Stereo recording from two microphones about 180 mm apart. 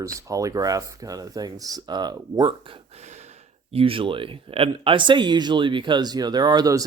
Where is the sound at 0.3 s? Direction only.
20° right (ahead or behind).